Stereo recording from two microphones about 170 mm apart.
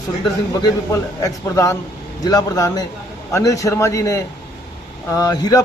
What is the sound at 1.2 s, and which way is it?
A man's voice, 20° left (ahead or behind).